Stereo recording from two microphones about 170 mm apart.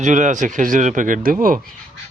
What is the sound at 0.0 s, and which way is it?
Speech, 45° right (ahead or behind).